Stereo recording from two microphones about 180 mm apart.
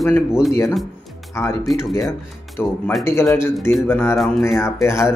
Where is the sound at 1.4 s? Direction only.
15° left (ahead or behind).